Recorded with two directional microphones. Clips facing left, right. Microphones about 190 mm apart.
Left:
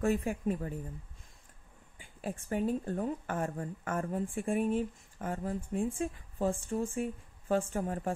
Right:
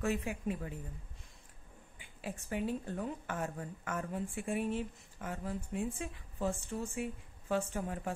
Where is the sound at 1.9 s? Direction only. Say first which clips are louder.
Left 4 dB; 45° left (ahead or behind).